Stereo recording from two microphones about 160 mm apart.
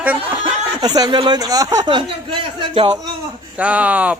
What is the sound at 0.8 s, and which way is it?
Speech, 25° right (ahead or behind).